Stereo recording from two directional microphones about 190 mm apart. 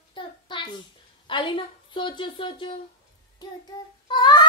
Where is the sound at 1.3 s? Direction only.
25° left (ahead or behind).